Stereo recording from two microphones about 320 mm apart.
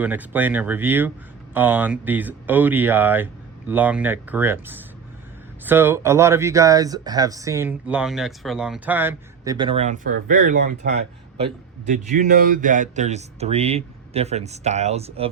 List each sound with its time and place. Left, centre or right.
0.0 s speech: centre